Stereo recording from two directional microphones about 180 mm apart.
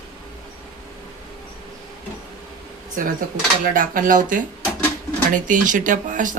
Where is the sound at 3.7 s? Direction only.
50° right (ahead or behind).